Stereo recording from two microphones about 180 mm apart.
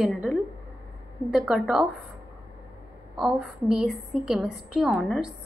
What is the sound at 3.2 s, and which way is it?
A woman's voice, 5° right (ahead or behind).